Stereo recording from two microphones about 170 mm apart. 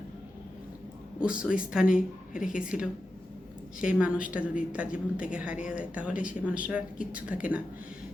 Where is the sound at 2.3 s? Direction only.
50° left (ahead or behind).